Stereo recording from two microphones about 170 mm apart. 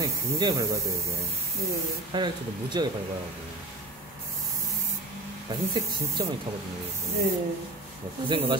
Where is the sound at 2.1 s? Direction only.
25° right (ahead or behind).